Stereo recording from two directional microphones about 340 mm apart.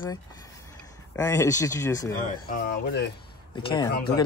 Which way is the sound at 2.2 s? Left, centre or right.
Left.